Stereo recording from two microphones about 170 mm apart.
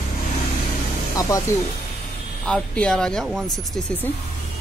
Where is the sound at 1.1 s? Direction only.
20° left (ahead or behind).